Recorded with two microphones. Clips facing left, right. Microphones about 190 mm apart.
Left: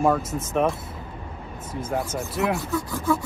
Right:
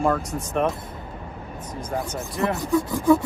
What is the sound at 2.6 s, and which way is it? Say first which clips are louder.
Speech: right 5 dB; 20° right (ahead or behind).